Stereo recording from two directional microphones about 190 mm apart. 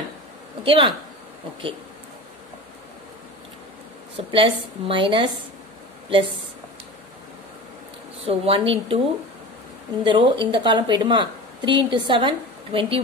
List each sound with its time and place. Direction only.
0.7 s speech: 25° right (ahead or behind)
4.3 s speech: 25° right (ahead or behind)
8.3 s speech: 30° right (ahead or behind)
10.0 s speech: 25° right (ahead or behind)